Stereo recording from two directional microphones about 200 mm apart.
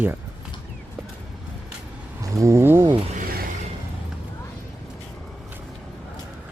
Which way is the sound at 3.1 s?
45° right (ahead or behind).